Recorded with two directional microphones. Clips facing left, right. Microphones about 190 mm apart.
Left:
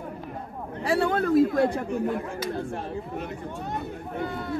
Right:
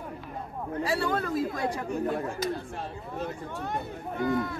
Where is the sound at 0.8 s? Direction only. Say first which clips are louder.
Left 6 dB; 60° left (ahead or behind).